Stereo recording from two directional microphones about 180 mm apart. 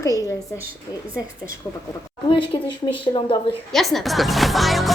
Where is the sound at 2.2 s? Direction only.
30° left (ahead or behind).